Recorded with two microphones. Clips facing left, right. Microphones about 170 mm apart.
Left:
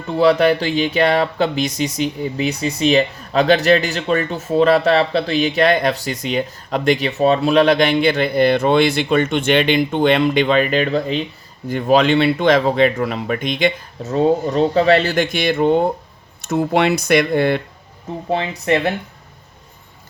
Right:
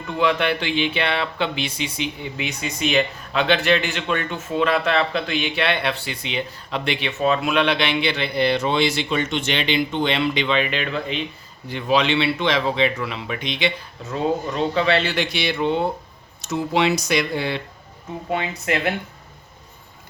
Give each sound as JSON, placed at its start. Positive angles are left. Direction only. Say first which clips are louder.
{"t": 0.1, "sound": "speech", "louder": "left 7 dB", "side_deg": 35}
{"t": 18.3, "sound": "speech", "louder": "left 6 dB", "side_deg": 30}